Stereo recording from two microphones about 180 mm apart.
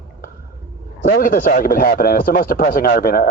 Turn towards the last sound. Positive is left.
turn(degrees=55)  # may be behind; listen again after turning